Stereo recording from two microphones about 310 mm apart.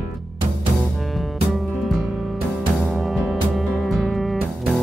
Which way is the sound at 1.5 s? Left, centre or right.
Centre.